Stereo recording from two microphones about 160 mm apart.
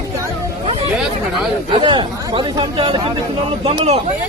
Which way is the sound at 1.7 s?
30° right (ahead or behind).